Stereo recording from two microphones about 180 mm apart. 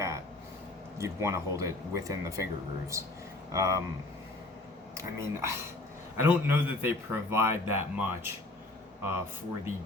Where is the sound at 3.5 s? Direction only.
20° right (ahead or behind).